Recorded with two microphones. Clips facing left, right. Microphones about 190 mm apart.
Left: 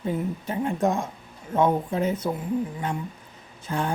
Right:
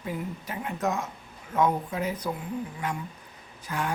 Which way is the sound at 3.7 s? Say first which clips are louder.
Left 3 dB; 30° left (ahead or behind).